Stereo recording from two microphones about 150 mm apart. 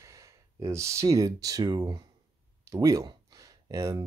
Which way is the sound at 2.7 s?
20° right (ahead or behind).